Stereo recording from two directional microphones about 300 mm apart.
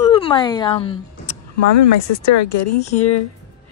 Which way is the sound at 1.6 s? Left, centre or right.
Left.